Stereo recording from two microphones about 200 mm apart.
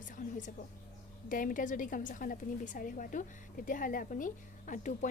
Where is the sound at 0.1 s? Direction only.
40° left (ahead or behind).